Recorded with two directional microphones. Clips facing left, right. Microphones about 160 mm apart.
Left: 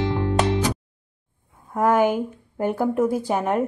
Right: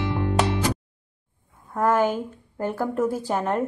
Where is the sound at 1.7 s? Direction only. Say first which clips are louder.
Left 2 dB; 15° left (ahead or behind).